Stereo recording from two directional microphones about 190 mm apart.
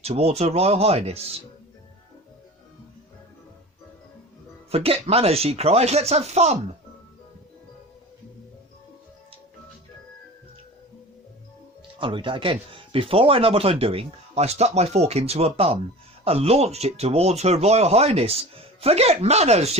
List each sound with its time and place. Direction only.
0.0 s speech: 35° right (ahead or behind)
4.7 s speech: 30° right (ahead or behind)
11.9 s speech: 25° right (ahead or behind)